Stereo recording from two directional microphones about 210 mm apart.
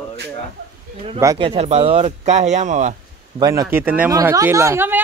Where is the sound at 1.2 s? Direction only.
20° right (ahead or behind).